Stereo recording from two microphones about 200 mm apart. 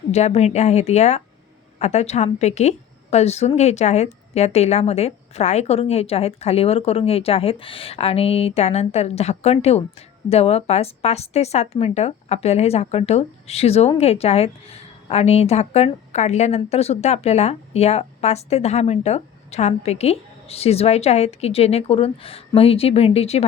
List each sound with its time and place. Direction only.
0.1 s a woman's voice: 35° left (ahead or behind)